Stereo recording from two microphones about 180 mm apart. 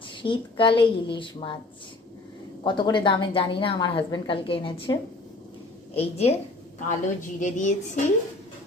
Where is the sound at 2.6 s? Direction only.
25° left (ahead or behind).